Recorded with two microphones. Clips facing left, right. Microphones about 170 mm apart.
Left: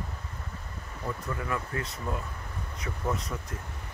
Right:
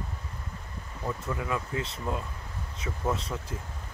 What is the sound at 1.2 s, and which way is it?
Speech, 15° right (ahead or behind).